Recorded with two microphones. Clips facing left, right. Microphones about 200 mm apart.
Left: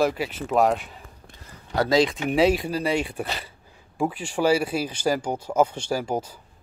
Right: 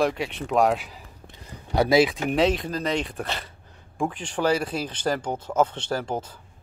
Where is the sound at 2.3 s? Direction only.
5° left (ahead or behind).